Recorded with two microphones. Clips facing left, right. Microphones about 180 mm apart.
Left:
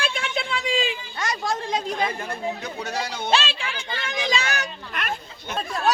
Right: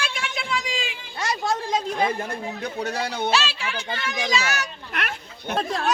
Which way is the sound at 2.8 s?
55° right (ahead or behind).